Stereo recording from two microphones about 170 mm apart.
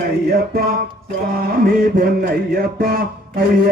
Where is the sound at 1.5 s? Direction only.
60° right (ahead or behind).